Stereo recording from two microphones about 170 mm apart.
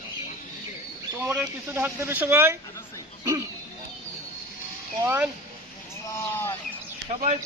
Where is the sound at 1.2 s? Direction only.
10° right (ahead or behind).